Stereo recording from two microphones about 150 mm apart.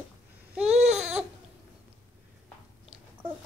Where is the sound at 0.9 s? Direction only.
5° right (ahead or behind).